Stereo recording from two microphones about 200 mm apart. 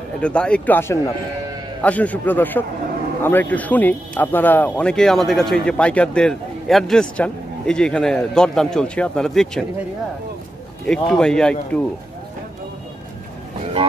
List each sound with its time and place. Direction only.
0.2 s a man's voice: 5° left (ahead or behind)
10.9 s a man's voice: 5° left (ahead or behind)